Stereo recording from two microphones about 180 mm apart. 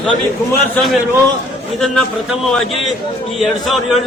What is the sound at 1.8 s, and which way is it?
A man's voice, 5° left (ahead or behind).